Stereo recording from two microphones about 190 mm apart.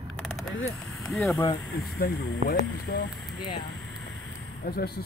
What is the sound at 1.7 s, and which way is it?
Speech, 60° left (ahead or behind).